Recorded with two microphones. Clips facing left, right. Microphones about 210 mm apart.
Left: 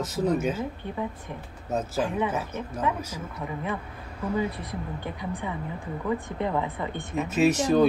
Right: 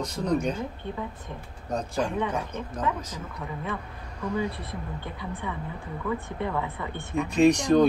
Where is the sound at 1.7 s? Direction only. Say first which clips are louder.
Left 1 dB; 5° left (ahead or behind).